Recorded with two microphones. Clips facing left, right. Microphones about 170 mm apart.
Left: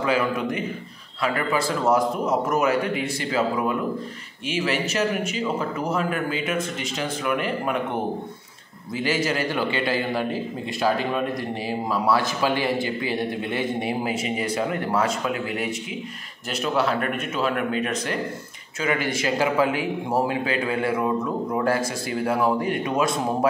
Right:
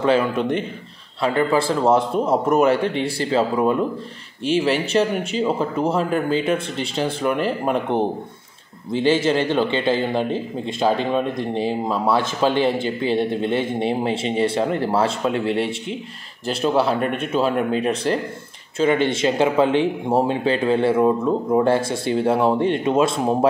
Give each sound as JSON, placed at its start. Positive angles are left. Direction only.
{"t": 0.1, "sound": "speech", "side_deg": -30}